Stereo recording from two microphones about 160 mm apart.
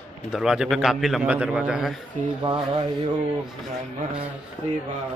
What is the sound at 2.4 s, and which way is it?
Speech, 30° right (ahead or behind).